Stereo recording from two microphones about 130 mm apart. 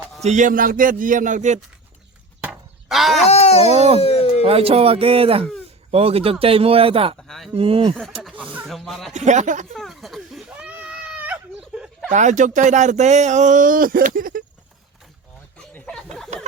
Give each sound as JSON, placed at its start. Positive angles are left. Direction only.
{"t": 0.2, "sound": "a man's voice", "side_deg": -65}
{"t": 2.5, "sound": "a sound", "side_deg": 0}
{"t": 3.2, "sound": "speech", "side_deg": 55}
{"t": 3.8, "sound": "speech", "side_deg": -55}
{"t": 4.0, "sound": "speech", "side_deg": 50}
{"t": 4.4, "sound": "speech", "side_deg": -50}
{"t": 7.2, "sound": "a sound", "side_deg": 5}
{"t": 7.5, "sound": "speech", "side_deg": -45}
{"t": 8.2, "sound": "speech", "side_deg": 5}
{"t": 9.1, "sound": "speech", "side_deg": -65}
{"t": 9.7, "sound": "speech", "side_deg": 0}
{"t": 10.5, "sound": "a sound", "side_deg": -10}
{"t": 12.1, "sound": "speech", "side_deg": -70}
{"t": 15.5, "sound": "a sound", "side_deg": 5}